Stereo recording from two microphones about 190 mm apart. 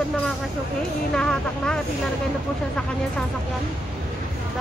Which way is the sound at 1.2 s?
5° left (ahead or behind).